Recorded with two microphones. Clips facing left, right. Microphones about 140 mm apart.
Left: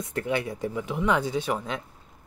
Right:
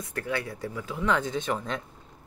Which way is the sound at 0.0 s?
20° left (ahead or behind).